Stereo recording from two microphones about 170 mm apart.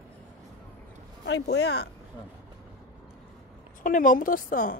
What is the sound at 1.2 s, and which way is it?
Speech, 85° left.